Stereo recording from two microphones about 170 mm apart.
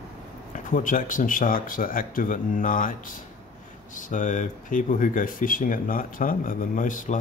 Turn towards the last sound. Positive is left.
turn(degrees=50)  # may be behind; listen again after turning